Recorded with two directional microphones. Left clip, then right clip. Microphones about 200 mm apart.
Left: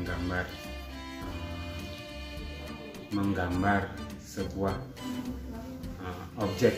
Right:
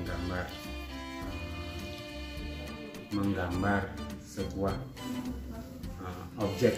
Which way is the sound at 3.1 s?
Centre (ahead or behind).